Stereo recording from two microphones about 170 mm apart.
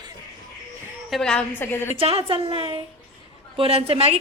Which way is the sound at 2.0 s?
35° right (ahead or behind).